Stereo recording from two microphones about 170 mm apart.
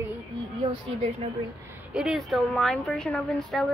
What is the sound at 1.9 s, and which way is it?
A woman's voice, centre (ahead or behind).